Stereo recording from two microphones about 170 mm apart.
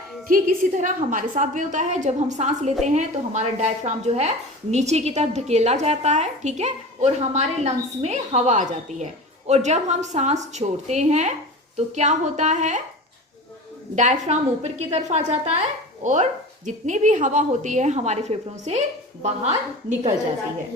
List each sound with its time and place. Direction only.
0.3 s speech: 50° right (ahead or behind)
13.9 s speech: 45° right (ahead or behind)